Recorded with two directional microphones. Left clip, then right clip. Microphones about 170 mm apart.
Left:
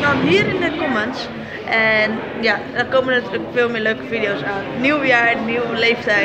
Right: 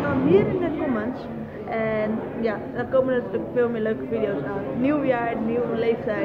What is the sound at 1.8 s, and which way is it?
A woman's voice, centre (ahead or behind).